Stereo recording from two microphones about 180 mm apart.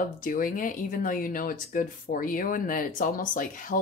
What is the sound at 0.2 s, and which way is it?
Speech, 50° left (ahead or behind).